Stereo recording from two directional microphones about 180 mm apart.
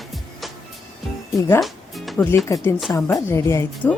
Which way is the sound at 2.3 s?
15° left (ahead or behind).